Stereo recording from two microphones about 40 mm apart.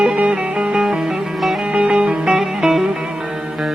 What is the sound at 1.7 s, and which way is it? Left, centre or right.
Music, right.